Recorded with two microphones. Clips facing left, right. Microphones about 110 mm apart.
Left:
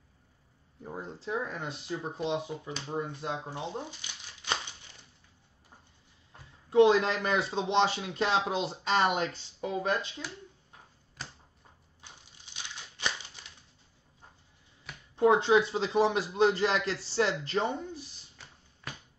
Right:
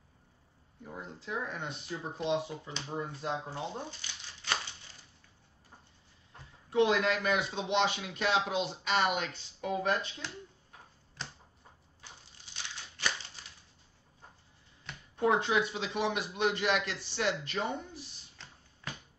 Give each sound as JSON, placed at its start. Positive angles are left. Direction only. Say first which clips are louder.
{"t": 0.8, "sound": "speech", "louder": "left 4 dB", "side_deg": 30}
{"t": 1.9, "sound": "speech", "louder": "even", "side_deg": 15}
{"t": 6.7, "sound": "speech", "louder": "left 5 dB", "side_deg": 30}
{"t": 12.6, "sound": "crumpling", "louder": "left 1 dB", "side_deg": 15}
{"t": 15.1, "sound": "speech", "louder": "left 5 dB", "side_deg": 25}
{"t": 18.4, "sound": "a sound", "louder": "even", "side_deg": 10}